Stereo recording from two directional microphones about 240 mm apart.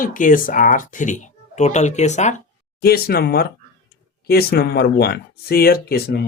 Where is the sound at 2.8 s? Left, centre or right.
Left.